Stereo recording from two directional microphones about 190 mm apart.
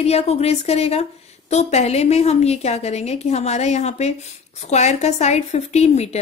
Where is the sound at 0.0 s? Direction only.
35° left (ahead or behind).